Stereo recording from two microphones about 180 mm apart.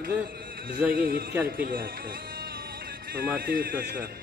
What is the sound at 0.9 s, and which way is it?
Speech, 50° right (ahead or behind).